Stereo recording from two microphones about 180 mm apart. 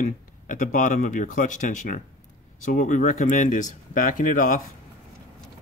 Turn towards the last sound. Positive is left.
turn(degrees=45)  # may be behind; listen again after turning